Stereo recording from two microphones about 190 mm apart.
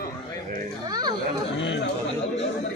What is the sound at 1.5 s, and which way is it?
Speech, 75° left (ahead or behind).